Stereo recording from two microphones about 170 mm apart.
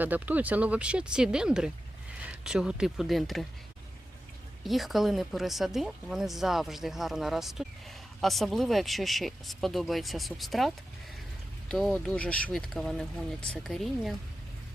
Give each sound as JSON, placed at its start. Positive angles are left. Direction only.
{"t": 0.0, "sound": "speech", "side_deg": -10}
{"t": 4.6, "sound": "speech", "side_deg": 0}
{"t": 11.7, "sound": "speech", "side_deg": 5}